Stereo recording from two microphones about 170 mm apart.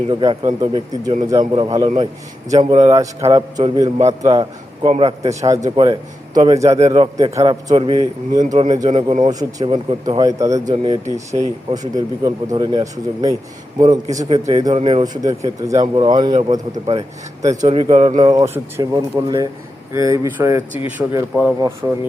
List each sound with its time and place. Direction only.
0.1 s a man's voice: 25° right (ahead or behind)
2.9 s a man's voice: 20° right (ahead or behind)
5.3 s speech: 20° right (ahead or behind)
5.7 s a man's voice: 30° right (ahead or behind)
8.4 s a man's voice: 50° right (ahead or behind)
8.9 s a man's voice: 30° right (ahead or behind)
15.0 s speech: 20° right (ahead or behind)
17.7 s a man's voice: 30° right (ahead or behind); by 22.0 s 15° right (ahead or behind)